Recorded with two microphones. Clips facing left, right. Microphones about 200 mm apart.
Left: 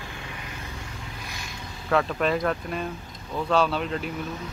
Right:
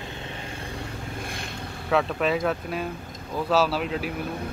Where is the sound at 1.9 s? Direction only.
Centre (ahead or behind).